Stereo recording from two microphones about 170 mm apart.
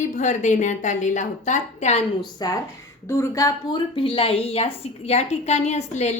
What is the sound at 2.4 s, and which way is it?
A woman's voice, 25° left (ahead or behind).